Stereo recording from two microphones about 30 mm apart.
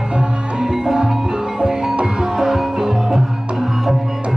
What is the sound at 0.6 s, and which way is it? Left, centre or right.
Music, centre.